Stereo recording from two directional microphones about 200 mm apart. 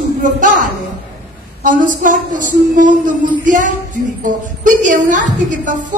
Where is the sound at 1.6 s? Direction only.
40° right (ahead or behind).